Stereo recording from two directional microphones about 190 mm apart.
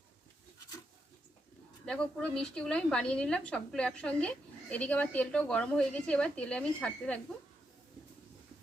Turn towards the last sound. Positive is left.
turn(degrees=5)  # may be behind; listen again after turning